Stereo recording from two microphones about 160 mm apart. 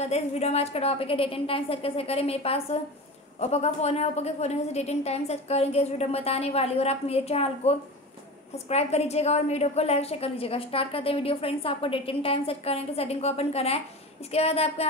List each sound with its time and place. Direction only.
0.0 s a woman's voice: 40° left (ahead or behind)